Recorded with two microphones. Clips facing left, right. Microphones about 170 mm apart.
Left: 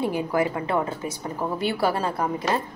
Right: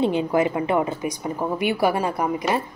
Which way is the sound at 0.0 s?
20° right (ahead or behind).